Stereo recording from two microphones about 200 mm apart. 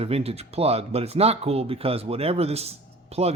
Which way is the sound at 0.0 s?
30° right (ahead or behind).